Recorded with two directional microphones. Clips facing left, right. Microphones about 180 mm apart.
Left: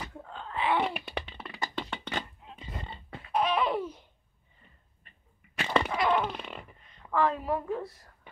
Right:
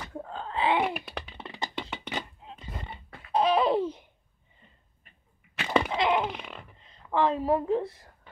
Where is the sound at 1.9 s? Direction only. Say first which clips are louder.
Even; 10° right (ahead or behind).